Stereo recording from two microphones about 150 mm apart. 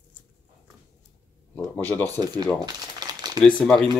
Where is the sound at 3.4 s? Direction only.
5° left (ahead or behind).